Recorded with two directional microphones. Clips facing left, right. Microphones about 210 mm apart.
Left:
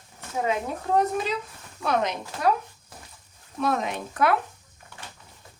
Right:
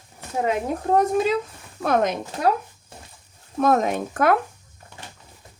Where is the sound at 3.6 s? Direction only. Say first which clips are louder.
Right 7 dB; 45° right (ahead or behind).